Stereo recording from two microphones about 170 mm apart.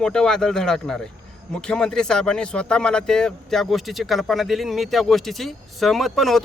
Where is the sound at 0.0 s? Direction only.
5° left (ahead or behind).